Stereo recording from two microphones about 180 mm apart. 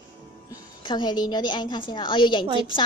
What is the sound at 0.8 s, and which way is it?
A woman's voice, 25° left (ahead or behind).